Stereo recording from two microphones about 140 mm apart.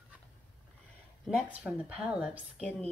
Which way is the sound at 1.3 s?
5° right (ahead or behind).